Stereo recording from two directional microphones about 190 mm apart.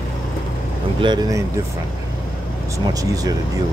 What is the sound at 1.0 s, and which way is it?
Speech, 20° right (ahead or behind).